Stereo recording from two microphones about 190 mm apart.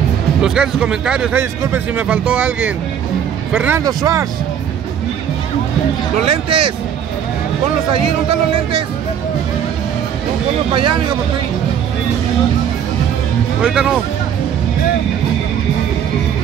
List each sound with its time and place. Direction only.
0.4 s a man's voice: 5° right (ahead or behind)
6.2 s speech: 30° right (ahead or behind)
8.0 s speech: 30° right (ahead or behind)
13.6 s speech: 5° right (ahead or behind)